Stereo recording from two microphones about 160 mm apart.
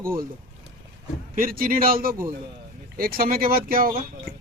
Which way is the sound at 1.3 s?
65° right (ahead or behind).